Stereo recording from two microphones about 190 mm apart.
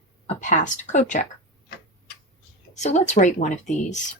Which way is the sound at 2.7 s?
35° left (ahead or behind).